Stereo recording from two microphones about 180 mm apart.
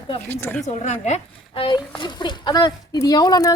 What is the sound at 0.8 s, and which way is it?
Speech, 40° left (ahead or behind).